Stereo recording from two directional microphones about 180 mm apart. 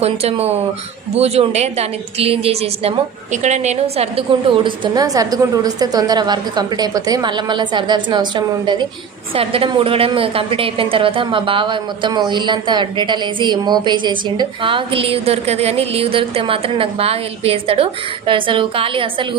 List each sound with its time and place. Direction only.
0.0 s a woman's voice: 35° right (ahead or behind)